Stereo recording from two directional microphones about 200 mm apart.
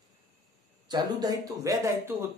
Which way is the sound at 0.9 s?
20° right (ahead or behind).